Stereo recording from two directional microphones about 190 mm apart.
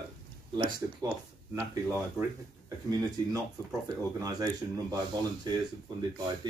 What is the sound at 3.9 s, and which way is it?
Speech, 20° right (ahead or behind).